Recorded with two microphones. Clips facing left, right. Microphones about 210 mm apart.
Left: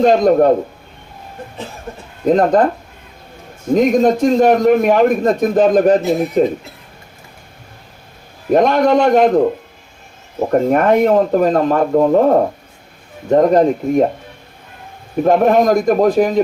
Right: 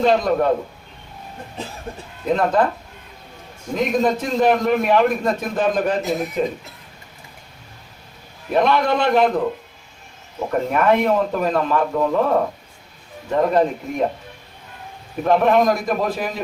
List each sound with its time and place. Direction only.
0.0 s a man's voice: 40° left (ahead or behind)
2.2 s a man's voice: 40° left (ahead or behind)
3.8 s a man's voice: 45° left (ahead or behind)
8.5 s a man's voice: 45° left (ahead or behind)
10.5 s a man's voice: 45° left (ahead or behind)
15.2 s a man's voice: 45° left (ahead or behind)